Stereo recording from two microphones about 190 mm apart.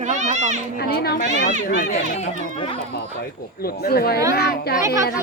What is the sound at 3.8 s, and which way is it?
Speech, 55° left (ahead or behind).